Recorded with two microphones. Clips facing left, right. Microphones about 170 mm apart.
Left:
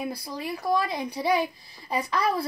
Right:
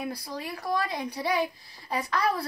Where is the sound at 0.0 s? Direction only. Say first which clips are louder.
Left 2 dB; 5° left (ahead or behind).